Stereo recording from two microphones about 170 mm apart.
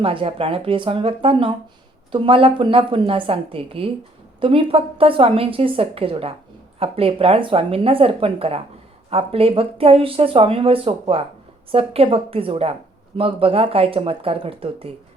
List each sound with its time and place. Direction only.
0.0 s speech: 30° right (ahead or behind)